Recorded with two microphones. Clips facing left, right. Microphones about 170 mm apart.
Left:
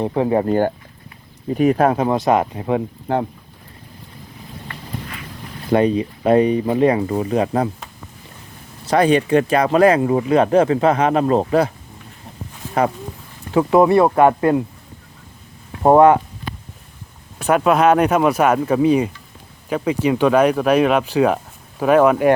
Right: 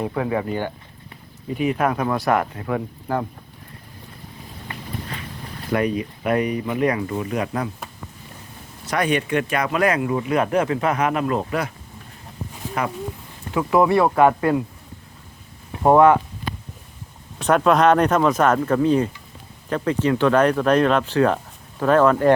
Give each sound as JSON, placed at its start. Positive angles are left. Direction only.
{"t": 0.0, "sound": "speech", "side_deg": 30}
{"t": 5.7, "sound": "speech", "side_deg": 30}
{"t": 8.9, "sound": "speech", "side_deg": 30}
{"t": 12.8, "sound": "speech", "side_deg": 30}
{"t": 15.8, "sound": "speech", "side_deg": 20}
{"t": 17.4, "sound": "speech", "side_deg": 5}